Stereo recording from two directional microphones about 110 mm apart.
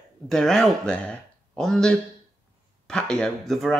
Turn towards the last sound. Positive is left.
turn(degrees=0)  # may be behind; listen again after turning